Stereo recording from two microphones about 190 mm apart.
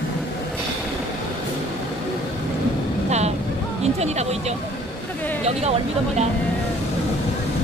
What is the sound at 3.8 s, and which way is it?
Speech, 35° right (ahead or behind).